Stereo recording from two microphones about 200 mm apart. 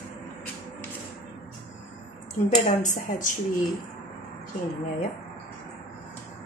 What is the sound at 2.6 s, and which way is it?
Speech, 40° left (ahead or behind).